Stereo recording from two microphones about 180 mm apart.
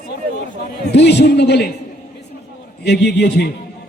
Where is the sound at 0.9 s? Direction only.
70° left (ahead or behind).